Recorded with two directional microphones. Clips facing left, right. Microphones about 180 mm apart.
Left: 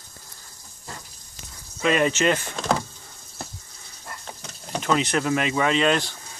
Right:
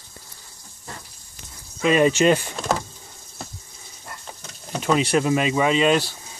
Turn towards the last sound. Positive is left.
turn(degrees=-10)  # may be behind; listen again after turning